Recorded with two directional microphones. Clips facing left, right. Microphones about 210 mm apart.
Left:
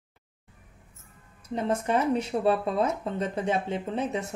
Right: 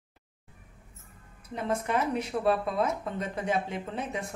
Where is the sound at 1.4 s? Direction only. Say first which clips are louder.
Left 3 dB; 30° left (ahead or behind).